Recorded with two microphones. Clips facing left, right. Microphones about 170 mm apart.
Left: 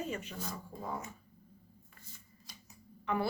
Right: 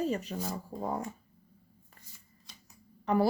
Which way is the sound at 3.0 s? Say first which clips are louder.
Right 7 dB; 35° right (ahead or behind).